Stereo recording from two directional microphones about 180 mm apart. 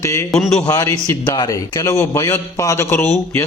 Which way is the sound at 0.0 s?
15° left (ahead or behind).